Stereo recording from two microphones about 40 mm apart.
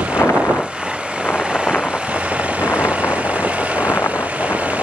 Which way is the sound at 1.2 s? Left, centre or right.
Right.